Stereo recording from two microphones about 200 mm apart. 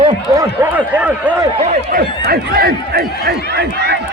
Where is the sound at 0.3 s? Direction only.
20° right (ahead or behind).